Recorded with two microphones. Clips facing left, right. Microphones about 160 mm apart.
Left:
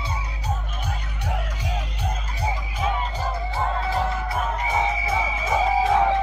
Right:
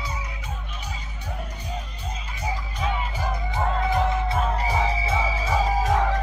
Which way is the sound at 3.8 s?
20° right (ahead or behind).